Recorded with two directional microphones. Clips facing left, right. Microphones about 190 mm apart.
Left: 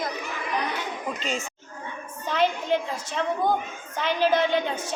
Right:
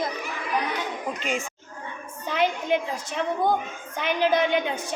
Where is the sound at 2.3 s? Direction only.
15° right (ahead or behind).